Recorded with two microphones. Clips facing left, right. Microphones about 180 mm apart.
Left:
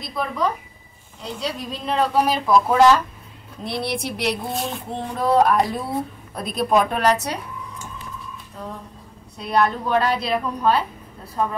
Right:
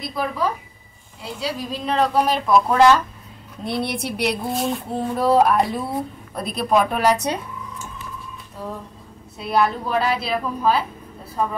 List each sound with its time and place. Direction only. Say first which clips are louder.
0.0 s speech: even; 5° right (ahead or behind)
9.4 s speech: even; 5° right (ahead or behind)